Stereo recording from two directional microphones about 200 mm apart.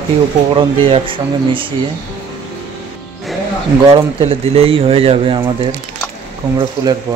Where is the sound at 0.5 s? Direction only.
25° right (ahead or behind).